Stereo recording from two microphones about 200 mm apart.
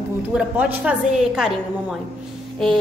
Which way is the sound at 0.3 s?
5° right (ahead or behind).